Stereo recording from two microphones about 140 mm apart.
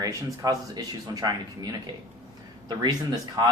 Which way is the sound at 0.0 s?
25° right (ahead or behind).